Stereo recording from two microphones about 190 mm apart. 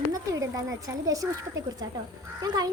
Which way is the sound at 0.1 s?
15° right (ahead or behind).